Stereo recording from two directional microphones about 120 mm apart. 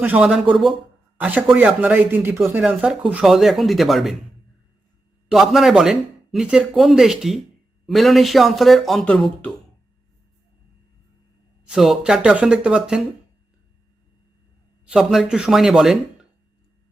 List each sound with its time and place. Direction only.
0.0 s a man's voice: 15° right (ahead or behind)
1.2 s a man's voice: 15° right (ahead or behind)
5.3 s a man's voice: centre (ahead or behind)
11.7 s speech: 5° right (ahead or behind)
14.8 s a man's voice: 5° right (ahead or behind)